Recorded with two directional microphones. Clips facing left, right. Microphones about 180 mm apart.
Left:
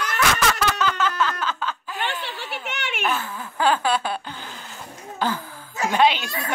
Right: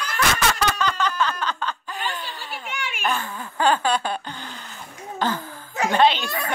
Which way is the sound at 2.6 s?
70° left (ahead or behind).